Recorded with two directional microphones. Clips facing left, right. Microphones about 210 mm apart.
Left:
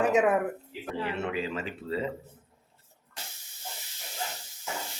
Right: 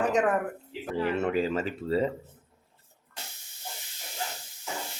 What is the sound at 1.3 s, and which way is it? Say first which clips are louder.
Speech: right 5 dB; 40° right (ahead or behind).